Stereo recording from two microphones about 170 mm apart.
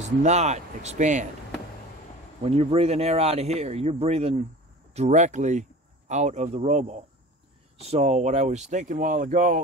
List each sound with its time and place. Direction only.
0.2 s speech: 40° right (ahead or behind)
2.4 s speech: 35° right (ahead or behind)